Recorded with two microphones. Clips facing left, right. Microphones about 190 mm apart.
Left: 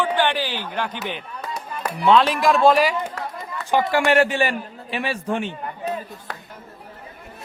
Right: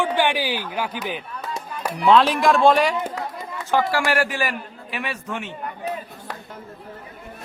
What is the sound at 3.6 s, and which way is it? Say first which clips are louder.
A man's voice: left 2 dB; 20° left (ahead or behind).